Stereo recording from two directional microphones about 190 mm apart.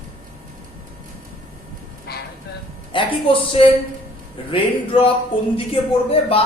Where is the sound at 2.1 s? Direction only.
55° left (ahead or behind).